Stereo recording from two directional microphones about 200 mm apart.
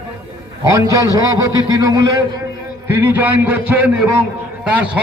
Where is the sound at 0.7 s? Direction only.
15° right (ahead or behind).